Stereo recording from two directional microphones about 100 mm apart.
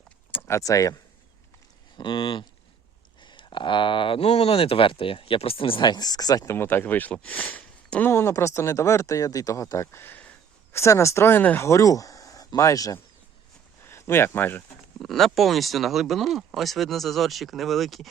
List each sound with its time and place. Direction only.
0.3 s speech: 20° left (ahead or behind)
2.0 s speech: 55° left (ahead or behind); by 6.6 s 35° left (ahead or behind)
6.6 s speech: 20° left (ahead or behind)
8.1 s speech: 25° left (ahead or behind)
10.7 s speech: 30° left (ahead or behind)
14.9 s speech: centre (ahead or behind)